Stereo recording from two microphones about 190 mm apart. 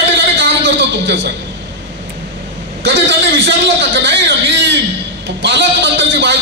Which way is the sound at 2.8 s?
65° right (ahead or behind).